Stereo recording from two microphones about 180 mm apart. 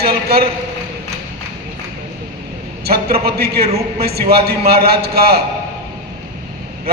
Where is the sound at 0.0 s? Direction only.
60° right (ahead or behind).